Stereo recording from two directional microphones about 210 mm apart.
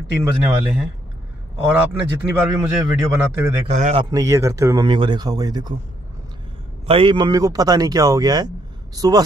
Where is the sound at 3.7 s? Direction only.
35° right (ahead or behind).